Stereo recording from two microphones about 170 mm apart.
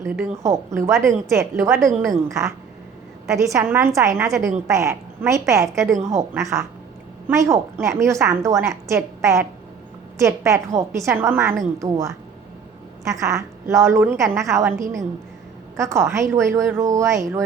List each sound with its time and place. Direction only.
0.0 s a woman's voice: 15° right (ahead or behind)